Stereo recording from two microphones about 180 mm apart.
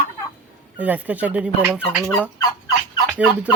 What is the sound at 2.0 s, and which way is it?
Fowl, centre (ahead or behind).